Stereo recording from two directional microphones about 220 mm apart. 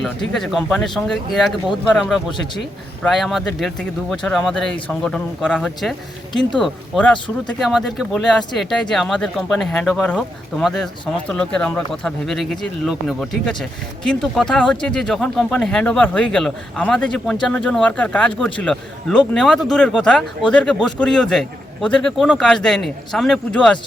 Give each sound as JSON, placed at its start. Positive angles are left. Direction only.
{"t": 0.0, "sound": "speech", "side_deg": 0}